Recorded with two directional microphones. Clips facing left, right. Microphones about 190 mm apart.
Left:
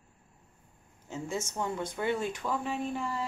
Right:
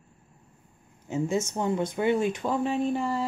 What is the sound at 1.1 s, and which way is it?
Speech, 20° right (ahead or behind).